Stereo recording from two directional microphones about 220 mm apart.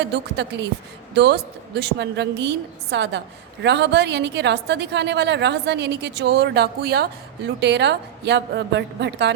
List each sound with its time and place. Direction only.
0.0 s a woman's voice: 50° right (ahead or behind)